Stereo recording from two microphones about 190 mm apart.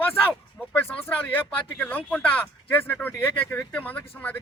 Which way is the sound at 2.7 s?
10° left (ahead or behind).